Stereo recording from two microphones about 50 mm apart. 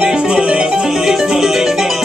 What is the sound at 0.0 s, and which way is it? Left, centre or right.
Music, centre.